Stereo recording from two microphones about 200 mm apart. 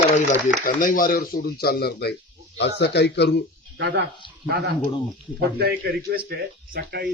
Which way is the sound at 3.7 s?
60° right (ahead or behind).